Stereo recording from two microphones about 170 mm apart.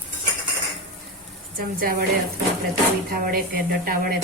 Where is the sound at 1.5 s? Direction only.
60° right (ahead or behind).